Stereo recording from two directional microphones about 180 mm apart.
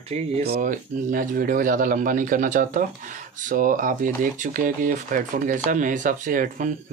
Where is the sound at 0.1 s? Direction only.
35° right (ahead or behind).